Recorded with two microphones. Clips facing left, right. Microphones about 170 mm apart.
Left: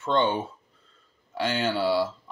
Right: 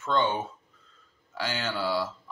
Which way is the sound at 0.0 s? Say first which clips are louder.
Left 3 dB; 30° left (ahead or behind).